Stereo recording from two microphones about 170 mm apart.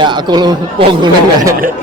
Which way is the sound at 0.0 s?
25° right (ahead or behind).